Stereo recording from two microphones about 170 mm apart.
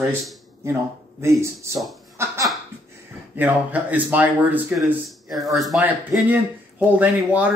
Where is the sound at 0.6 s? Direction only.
15° right (ahead or behind).